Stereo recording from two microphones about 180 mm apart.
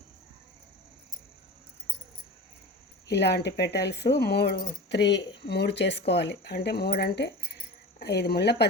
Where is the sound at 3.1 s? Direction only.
70° left (ahead or behind).